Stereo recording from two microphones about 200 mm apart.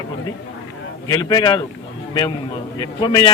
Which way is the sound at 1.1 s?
20° left (ahead or behind).